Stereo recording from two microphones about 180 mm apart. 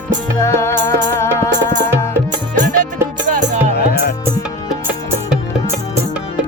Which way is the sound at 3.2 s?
45° right (ahead or behind).